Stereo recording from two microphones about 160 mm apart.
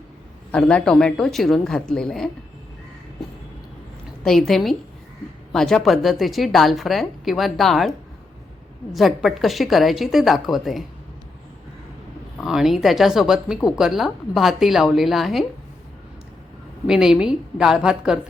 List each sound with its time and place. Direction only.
0.5 s a woman's voice: 5° left (ahead or behind)
4.2 s a woman's voice: centre (ahead or behind)
12.4 s a woman's voice: centre (ahead or behind)
16.8 s a woman's voice: 5° right (ahead or behind)